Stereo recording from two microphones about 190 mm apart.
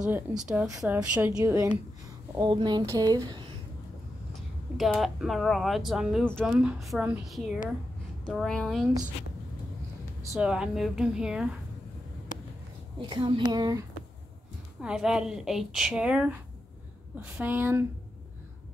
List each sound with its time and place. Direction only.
0.0 s speech: 5° right (ahead or behind); by 3.4 s 20° right (ahead or behind)
4.3 s speech: centre (ahead or behind)
10.3 s speech: 5° right (ahead or behind)
13.1 s speech: 25° right (ahead or behind)
14.8 s speech: 5° right (ahead or behind)
17.4 s speech: 10° right (ahead or behind)